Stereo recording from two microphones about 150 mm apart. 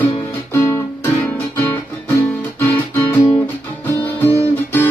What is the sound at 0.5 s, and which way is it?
Music, 15° left (ahead or behind).